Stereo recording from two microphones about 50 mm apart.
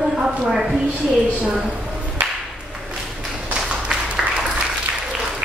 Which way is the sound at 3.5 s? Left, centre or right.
Centre.